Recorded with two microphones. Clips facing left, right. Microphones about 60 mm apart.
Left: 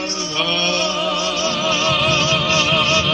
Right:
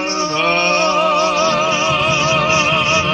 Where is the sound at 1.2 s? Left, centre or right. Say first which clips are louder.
Right 6 dB; right.